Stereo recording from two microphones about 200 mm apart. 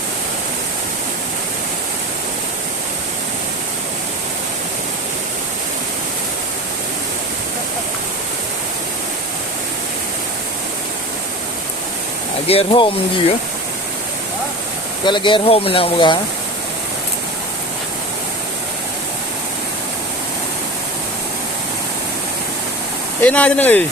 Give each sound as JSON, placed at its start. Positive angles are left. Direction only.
{"t": 12.5, "sound": "speech", "side_deg": 25}
{"t": 15.0, "sound": "speech", "side_deg": 25}
{"t": 23.2, "sound": "speech", "side_deg": 5}